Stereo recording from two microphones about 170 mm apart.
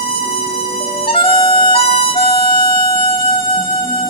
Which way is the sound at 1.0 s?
30° left (ahead or behind).